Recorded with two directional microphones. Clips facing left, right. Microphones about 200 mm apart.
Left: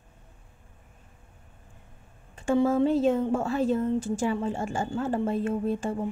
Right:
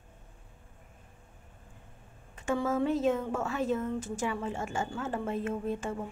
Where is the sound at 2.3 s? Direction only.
30° left (ahead or behind).